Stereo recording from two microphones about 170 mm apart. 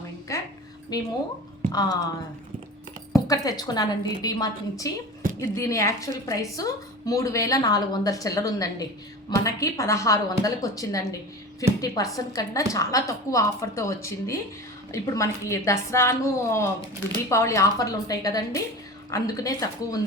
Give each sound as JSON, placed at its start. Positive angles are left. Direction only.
{"t": 0.3, "sound": "a sound", "side_deg": 20}
{"t": 0.9, "sound": "a woman's voice", "side_deg": 20}
{"t": 3.2, "sound": "a woman's voice", "side_deg": 20}